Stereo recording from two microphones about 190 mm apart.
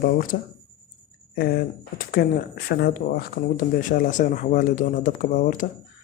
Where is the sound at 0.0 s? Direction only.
45° left (ahead or behind).